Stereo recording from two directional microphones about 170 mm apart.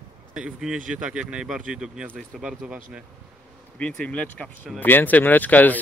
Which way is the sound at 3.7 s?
5° left (ahead or behind).